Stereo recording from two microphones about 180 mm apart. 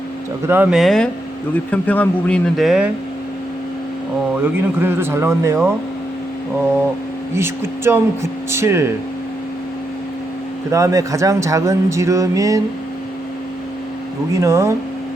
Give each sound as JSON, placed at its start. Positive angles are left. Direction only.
{"t": 0.4, "sound": "speech", "side_deg": -10}
{"t": 4.5, "sound": "speech", "side_deg": -10}
{"t": 7.3, "sound": "speech", "side_deg": -15}
{"t": 10.7, "sound": "speech", "side_deg": -15}
{"t": 14.3, "sound": "speech", "side_deg": -15}